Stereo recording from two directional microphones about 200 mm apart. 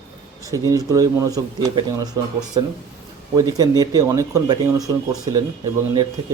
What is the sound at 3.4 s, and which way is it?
Speech, 20° right (ahead or behind).